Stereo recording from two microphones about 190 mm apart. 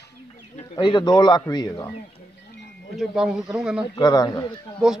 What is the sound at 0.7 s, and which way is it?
Speech, 25° left (ahead or behind).